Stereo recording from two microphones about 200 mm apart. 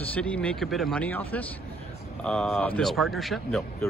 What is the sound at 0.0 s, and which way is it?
A man's voice, 5° left (ahead or behind).